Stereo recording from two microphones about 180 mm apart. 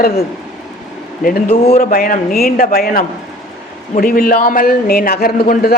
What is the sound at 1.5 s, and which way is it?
Speech, 35° left (ahead or behind).